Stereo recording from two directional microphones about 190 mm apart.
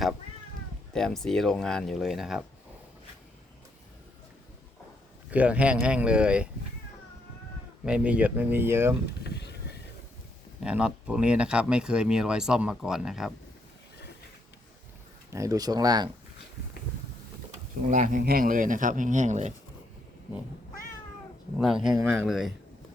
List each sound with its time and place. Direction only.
0.9 s speech: 5° left (ahead or behind)
5.3 s speech: 5° right (ahead or behind)
7.9 s speech: 5° right (ahead or behind)
9.2 s a sound: 60° left (ahead or behind)
10.6 s speech: 5° right (ahead or behind)
15.3 s speech: 15° right (ahead or behind)
17.8 s speech: 45° right (ahead or behind)
21.6 s speech: 5° right (ahead or behind)